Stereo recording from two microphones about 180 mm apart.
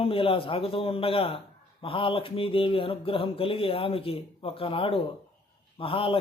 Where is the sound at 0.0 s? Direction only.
30° left (ahead or behind).